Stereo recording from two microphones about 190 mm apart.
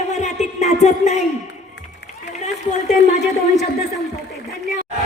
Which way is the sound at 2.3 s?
35° left (ahead or behind).